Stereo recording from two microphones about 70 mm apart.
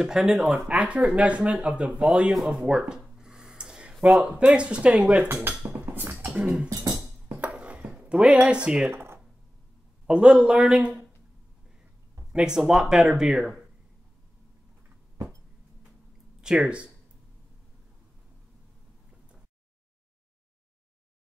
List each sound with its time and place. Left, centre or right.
0.0 s speech: centre
5.2 s speech: right
5.7 s a sound: right
6.3 s speech: centre
7.2 s music: right
7.5 s a sound: centre
7.9 s speech: centre
8.9 s a sound: right
10.0 s speech: centre
12.3 s speech: centre
16.3 s speech: centre